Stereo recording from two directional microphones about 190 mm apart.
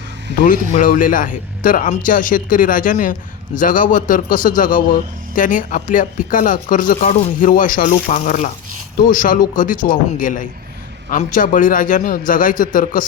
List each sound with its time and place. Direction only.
0.3 s a man's voice: 45° left (ahead or behind)